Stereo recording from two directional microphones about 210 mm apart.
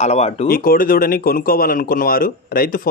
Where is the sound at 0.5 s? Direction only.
45° left (ahead or behind).